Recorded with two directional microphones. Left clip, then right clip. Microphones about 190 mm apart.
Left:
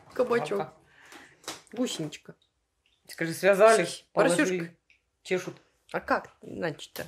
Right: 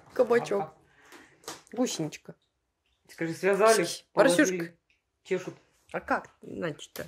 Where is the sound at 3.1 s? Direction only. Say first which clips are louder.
Left 3 dB; 35° left (ahead or behind).